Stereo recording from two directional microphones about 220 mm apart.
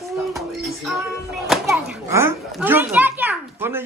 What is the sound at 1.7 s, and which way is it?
A child's voice, 10° right (ahead or behind).